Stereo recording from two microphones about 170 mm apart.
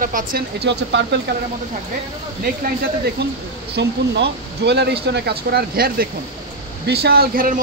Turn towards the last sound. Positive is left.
turn(degrees=-55)  # may be behind; listen again after turning